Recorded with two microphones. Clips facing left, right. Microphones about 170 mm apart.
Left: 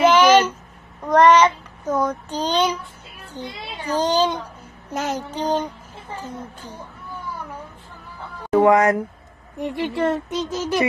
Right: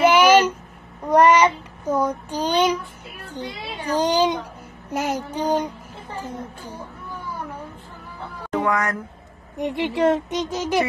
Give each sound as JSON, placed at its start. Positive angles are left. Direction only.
{"t": 0.0, "sound": "a sound", "side_deg": -10}
{"t": 1.0, "sound": "child singing", "side_deg": -10}
{"t": 3.3, "sound": "a child's voice", "side_deg": -15}
{"t": 8.6, "sound": "speech", "side_deg": 25}
{"t": 9.6, "sound": "speech", "side_deg": -20}